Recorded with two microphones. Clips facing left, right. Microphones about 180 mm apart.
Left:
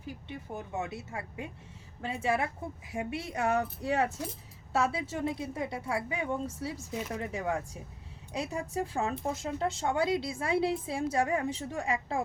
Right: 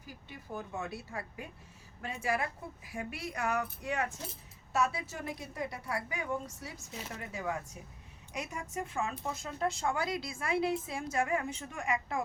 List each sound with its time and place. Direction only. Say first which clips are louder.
0.0 s speech: left 8 dB; 25° left (ahead or behind)